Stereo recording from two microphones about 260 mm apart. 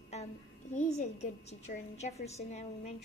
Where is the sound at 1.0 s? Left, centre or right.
Left.